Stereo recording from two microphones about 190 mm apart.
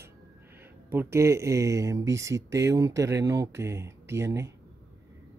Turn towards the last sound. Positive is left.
turn(degrees=-15)  # may be behind; listen again after turning